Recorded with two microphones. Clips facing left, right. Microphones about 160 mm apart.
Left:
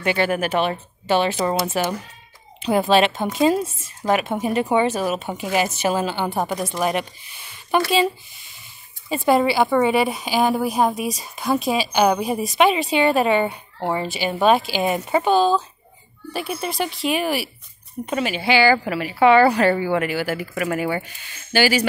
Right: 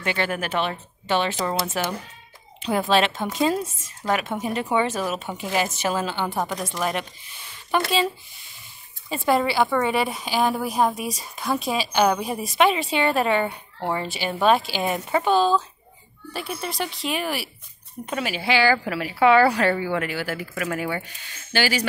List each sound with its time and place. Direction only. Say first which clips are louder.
0.0 s a woman's voice: left 5 dB; 10° left (ahead or behind)
1.7 s a woman's voice: left 4 dB; 30° left (ahead or behind)
3.3 s a woman's voice: left 5 dB; 10° left (ahead or behind)
6.2 s a woman's voice: left 3 dB; 20° left (ahead or behind)
9.1 s a woman's voice: left 4 dB; 10° left (ahead or behind)